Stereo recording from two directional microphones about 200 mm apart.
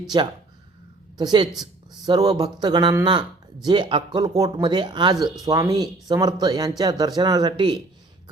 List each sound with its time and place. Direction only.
0.1 s speech: 25° right (ahead or behind)